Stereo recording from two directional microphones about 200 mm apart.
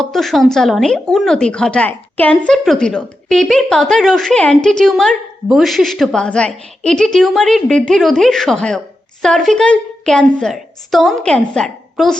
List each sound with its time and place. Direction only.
0.0 s speech: centre (ahead or behind)